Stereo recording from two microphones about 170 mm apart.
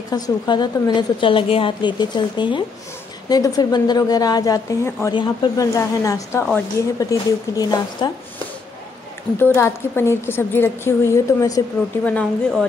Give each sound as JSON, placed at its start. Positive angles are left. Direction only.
{"t": 0.1, "sound": "a woman's voice", "side_deg": 25}
{"t": 9.4, "sound": "a woman's voice", "side_deg": 15}
{"t": 12.0, "sound": "a woman's voice", "side_deg": 5}